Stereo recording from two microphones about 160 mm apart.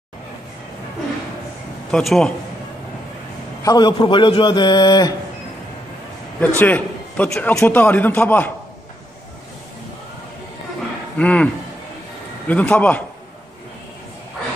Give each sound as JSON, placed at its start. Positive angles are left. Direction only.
{"t": 1.9, "sound": "a man's voice", "side_deg": 5}
{"t": 3.6, "sound": "a man's voice", "side_deg": 25}
{"t": 6.4, "sound": "a man's voice", "side_deg": 10}
{"t": 11.1, "sound": "a man's voice", "side_deg": 10}
{"t": 12.4, "sound": "a man's voice", "side_deg": 10}